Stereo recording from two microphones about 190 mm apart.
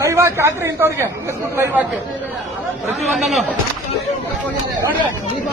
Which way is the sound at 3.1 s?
Centre (ahead or behind).